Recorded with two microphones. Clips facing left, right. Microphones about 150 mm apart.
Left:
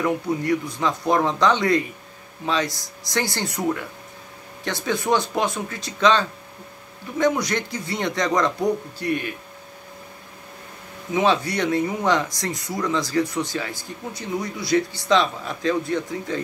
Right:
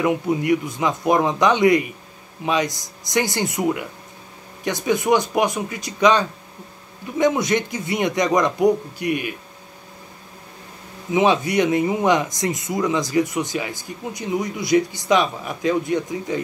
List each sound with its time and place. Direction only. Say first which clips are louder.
0.0 s speech: right 3 dB; 15° right (ahead or behind)
11.1 s speech: right 3 dB; 20° right (ahead or behind)